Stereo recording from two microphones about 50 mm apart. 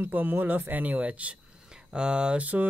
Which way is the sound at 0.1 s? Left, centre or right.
Right.